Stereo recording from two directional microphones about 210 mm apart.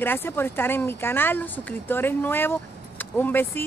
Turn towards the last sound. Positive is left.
turn(degrees=10)  # may be behind; listen again after turning